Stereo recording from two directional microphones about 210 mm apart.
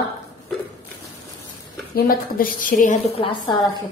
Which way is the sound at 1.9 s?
45° left (ahead or behind).